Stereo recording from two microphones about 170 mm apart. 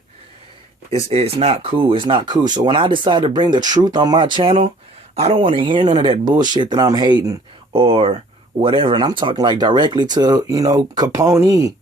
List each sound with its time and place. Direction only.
0.9 s speech: 35° right (ahead or behind)
7.7 s speech: 35° right (ahead or behind)